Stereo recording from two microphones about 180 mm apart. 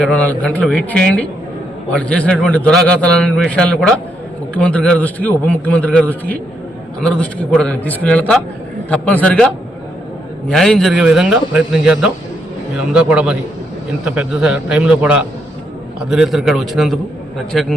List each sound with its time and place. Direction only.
0.0 s a man's voice: 5° left (ahead or behind)
10.5 s a man's voice: centre (ahead or behind)